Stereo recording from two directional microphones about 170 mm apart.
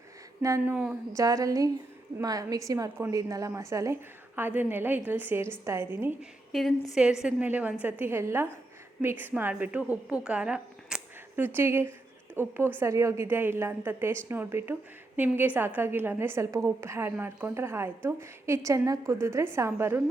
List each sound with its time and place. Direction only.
0.4 s a woman's voice: 15° right (ahead or behind)
1.1 s a woman's voice: 20° right (ahead or behind)
6.5 s a woman's voice: centre (ahead or behind); by 20.0 s 15° right (ahead or behind)